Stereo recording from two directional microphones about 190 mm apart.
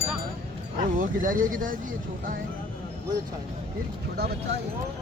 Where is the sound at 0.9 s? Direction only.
45° right (ahead or behind).